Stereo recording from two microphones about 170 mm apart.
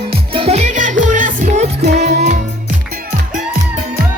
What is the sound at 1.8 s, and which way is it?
Music, 80° right.